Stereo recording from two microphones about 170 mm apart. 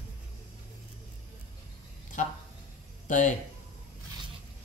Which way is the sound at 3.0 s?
50° left (ahead or behind).